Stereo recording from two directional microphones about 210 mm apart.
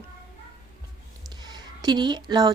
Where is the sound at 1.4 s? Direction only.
20° right (ahead or behind).